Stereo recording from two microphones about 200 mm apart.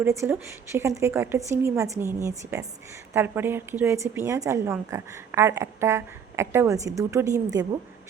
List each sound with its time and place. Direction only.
0.0 s speech: 15° right (ahead or behind)